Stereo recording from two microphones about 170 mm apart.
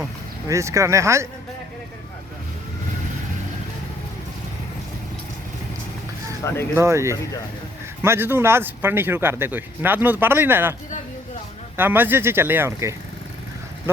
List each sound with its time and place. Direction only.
0.4 s speech: 20° right (ahead or behind)
6.4 s speech: 20° left (ahead or behind)
6.7 s speech: 15° right (ahead or behind)
11.8 s speech: 10° right (ahead or behind)